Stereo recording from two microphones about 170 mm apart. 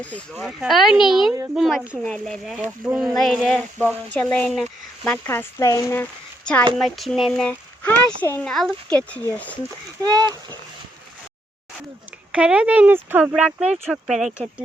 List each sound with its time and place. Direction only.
0.0 s speech: 5° left (ahead or behind)
2.6 s speech: 10° right (ahead or behind); by 6.1 s 15° left (ahead or behind)
6.4 s speech: 5° left (ahead or behind)
10.0 s speech: 25° right (ahead or behind)
12.3 s speech: 5° right (ahead or behind)